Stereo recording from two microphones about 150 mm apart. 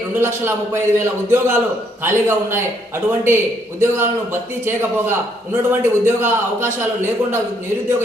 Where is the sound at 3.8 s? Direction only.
15° right (ahead or behind).